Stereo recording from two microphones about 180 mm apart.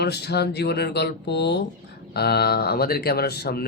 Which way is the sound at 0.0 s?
65° left (ahead or behind).